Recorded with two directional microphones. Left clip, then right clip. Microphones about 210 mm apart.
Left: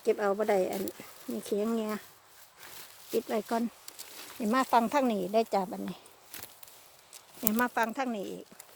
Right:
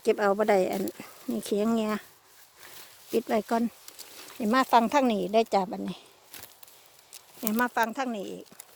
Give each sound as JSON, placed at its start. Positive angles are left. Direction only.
{"t": 0.0, "sound": "speech", "side_deg": -45}
{"t": 3.1, "sound": "speech", "side_deg": -45}
{"t": 7.4, "sound": "speech", "side_deg": -20}